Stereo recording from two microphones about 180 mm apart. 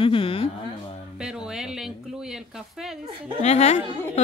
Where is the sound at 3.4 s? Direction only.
40° left (ahead or behind).